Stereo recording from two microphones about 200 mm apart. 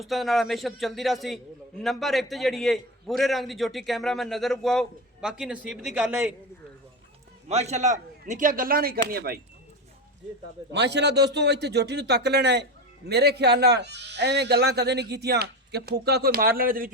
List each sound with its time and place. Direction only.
0.0 s a man's voice: centre (ahead or behind)
7.4 s speech: 35° right (ahead or behind)
10.7 s speech: 60° right (ahead or behind)